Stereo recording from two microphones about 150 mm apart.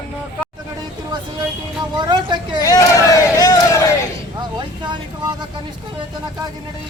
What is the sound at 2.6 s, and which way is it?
Crowd, 20° left (ahead or behind).